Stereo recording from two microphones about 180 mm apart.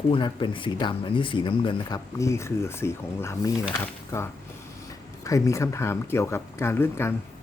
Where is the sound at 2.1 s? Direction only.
15° left (ahead or behind).